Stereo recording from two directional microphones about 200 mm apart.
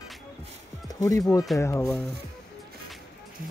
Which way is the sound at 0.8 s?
20° left (ahead or behind).